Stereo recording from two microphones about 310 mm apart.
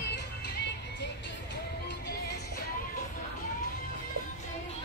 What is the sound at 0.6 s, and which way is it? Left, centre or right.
Music, left.